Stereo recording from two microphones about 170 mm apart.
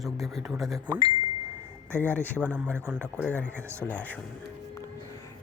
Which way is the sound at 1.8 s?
15° right (ahead or behind).